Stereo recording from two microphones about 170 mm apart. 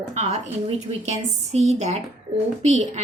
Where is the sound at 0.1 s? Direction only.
45° right (ahead or behind).